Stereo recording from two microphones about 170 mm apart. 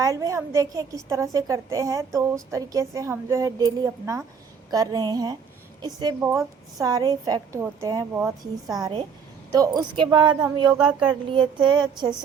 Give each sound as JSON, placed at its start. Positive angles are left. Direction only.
{"t": 0.0, "sound": "a woman's voice", "side_deg": -20}
{"t": 10.8, "sound": "a sound", "side_deg": -5}
{"t": 11.3, "sound": "speech", "side_deg": -30}